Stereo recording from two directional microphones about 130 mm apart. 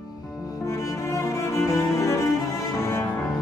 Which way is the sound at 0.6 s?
25° left (ahead or behind).